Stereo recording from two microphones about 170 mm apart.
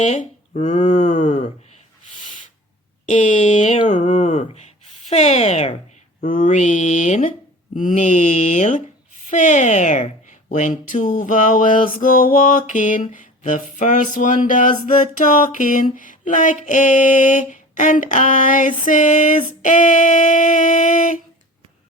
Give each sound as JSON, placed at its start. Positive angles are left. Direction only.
{"t": 0.0, "sound": "music", "side_deg": 40}
{"t": 3.1, "sound": "music", "side_deg": 45}